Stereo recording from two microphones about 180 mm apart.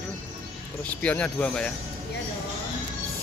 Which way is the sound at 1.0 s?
5° left (ahead or behind).